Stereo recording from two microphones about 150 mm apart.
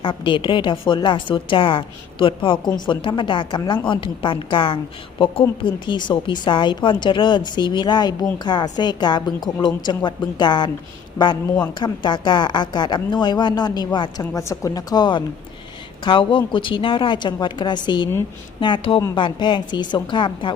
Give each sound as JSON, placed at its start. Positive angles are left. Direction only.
{"t": 0.0, "sound": "speech", "side_deg": 35}
{"t": 11.8, "sound": "a woman's voice", "side_deg": 30}